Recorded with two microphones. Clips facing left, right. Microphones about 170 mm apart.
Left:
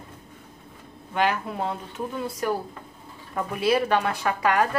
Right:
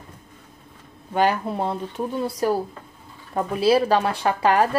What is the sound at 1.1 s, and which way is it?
A woman's voice, 35° right (ahead or behind).